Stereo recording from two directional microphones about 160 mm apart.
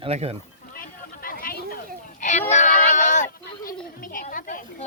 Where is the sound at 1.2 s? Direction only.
60° left (ahead or behind).